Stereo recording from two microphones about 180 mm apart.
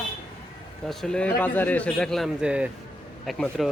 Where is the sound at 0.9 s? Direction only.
5° left (ahead or behind).